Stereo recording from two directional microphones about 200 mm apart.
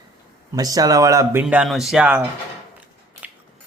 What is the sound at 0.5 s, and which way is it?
Speech, 20° right (ahead or behind).